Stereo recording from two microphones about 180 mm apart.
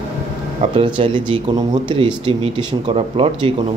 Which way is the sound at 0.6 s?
30° right (ahead or behind).